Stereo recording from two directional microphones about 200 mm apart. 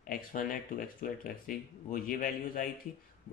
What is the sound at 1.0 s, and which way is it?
Speech, 45° left (ahead or behind).